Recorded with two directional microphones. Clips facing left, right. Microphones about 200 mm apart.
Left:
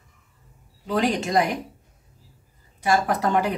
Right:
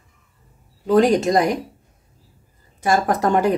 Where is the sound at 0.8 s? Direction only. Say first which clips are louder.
Right 8 dB; 45° right (ahead or behind).